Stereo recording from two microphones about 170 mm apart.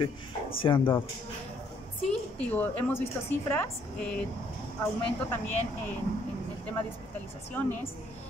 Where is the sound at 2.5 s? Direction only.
10° left (ahead or behind).